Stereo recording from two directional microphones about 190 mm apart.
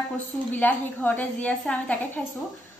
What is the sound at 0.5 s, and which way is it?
A man's voice, 10° left (ahead or behind).